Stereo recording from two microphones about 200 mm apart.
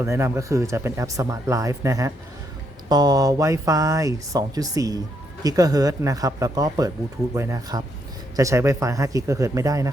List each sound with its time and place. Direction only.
0.0 s speech: 15° right (ahead or behind)